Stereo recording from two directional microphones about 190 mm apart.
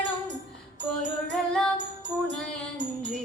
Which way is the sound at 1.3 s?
5° left (ahead or behind).